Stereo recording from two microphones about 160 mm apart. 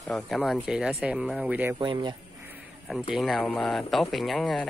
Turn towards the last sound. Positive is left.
turn(degrees=0)  # may be behind; listen again after turning